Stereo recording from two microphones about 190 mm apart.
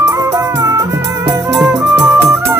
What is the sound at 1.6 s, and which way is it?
Music, 5° right (ahead or behind).